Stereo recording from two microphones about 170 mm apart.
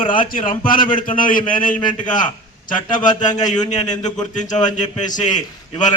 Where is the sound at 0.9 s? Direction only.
55° left (ahead or behind).